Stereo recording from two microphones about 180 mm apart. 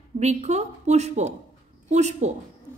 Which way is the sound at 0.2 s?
40° right (ahead or behind).